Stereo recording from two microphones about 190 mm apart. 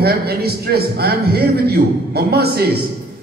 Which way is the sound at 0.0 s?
55° right (ahead or behind).